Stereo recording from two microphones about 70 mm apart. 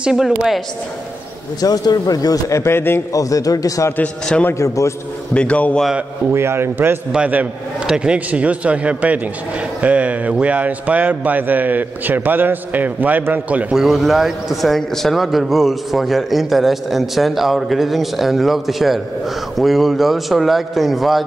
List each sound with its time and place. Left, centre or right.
0.0 s a woman's voice: centre
1.6 s a man's voice: left
2.6 s a man's voice: left
3.1 s a man's voice: left
5.3 s a man's voice: centre
6.3 s a man's voice: right
7.1 s a man's voice: centre
13.7 s a man's voice: centre